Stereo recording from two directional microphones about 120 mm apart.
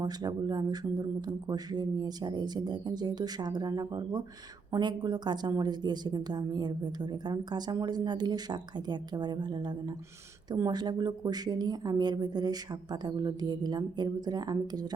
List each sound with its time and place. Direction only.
0.0 s a woman's voice: 35° right (ahead or behind)